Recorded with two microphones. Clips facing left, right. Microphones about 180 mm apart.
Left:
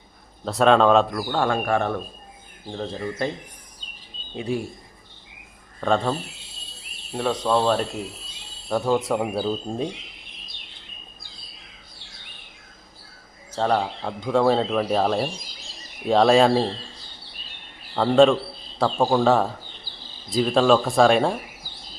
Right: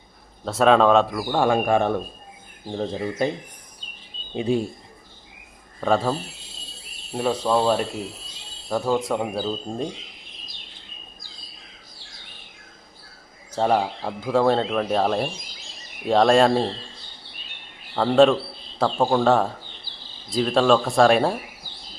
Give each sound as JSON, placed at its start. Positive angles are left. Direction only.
{"t": 0.4, "sound": "speech", "side_deg": 0}
{"t": 1.3, "sound": "speech", "side_deg": -15}
{"t": 4.4, "sound": "speech", "side_deg": -25}
{"t": 5.8, "sound": "speech", "side_deg": -5}
{"t": 13.6, "sound": "speech", "side_deg": -10}
{"t": 17.9, "sound": "speech", "side_deg": 0}